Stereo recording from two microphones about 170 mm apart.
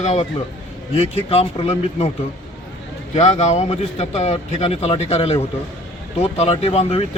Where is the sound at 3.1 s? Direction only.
40° left (ahead or behind).